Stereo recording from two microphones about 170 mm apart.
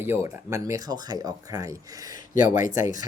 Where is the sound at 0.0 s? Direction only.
15° right (ahead or behind).